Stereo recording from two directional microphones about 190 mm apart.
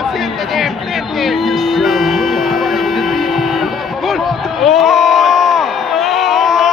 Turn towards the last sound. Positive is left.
turn(degrees=0)  # may be behind; listen again after turning